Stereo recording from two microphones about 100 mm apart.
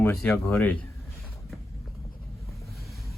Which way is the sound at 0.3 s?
15° left (ahead or behind).